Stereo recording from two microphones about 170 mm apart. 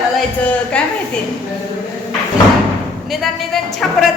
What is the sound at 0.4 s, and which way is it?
Speech, 5° left (ahead or behind).